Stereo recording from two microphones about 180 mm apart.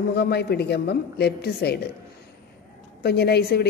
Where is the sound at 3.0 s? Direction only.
65° left (ahead or behind).